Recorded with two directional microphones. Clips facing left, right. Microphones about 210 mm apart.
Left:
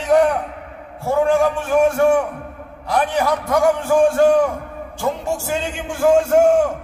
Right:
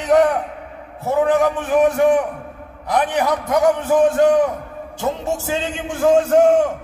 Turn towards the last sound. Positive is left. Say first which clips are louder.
# even
turn(degrees=-20)  # may be behind; listen again after turning